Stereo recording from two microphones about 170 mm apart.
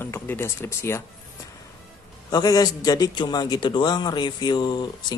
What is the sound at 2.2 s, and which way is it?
Speech, 20° left (ahead or behind).